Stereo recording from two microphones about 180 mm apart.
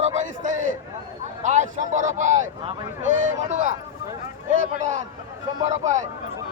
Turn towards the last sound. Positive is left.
turn(degrees=-40)  # may be behind; listen again after turning